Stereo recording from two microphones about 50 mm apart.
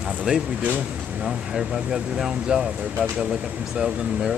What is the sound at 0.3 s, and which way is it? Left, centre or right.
Speech, centre.